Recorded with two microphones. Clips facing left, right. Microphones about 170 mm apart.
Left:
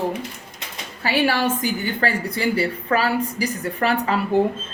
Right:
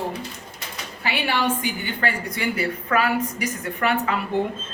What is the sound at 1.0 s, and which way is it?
A woman's voice, 40° left (ahead or behind).